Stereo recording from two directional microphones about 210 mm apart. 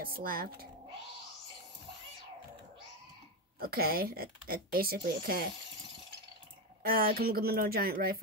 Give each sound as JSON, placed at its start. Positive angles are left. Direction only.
{"t": 0.0, "sound": "a woman's voice", "side_deg": -45}
{"t": 3.5, "sound": "a woman's voice", "side_deg": -45}
{"t": 6.8, "sound": "a woman's voice", "side_deg": -45}